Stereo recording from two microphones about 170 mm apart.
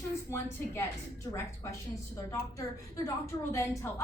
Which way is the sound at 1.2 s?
15° left (ahead or behind).